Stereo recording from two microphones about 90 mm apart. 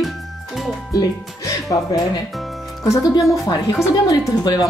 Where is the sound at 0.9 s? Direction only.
40° left (ahead or behind).